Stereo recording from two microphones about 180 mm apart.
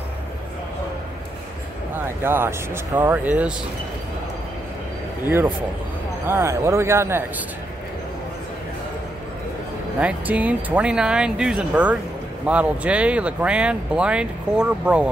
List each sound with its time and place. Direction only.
2.0 s speech: 10° right (ahead or behind)
5.2 s speech: 10° right (ahead or behind)
9.9 s speech: 10° right (ahead or behind)